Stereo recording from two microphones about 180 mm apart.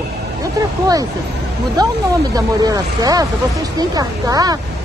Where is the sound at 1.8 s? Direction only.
20° right (ahead or behind).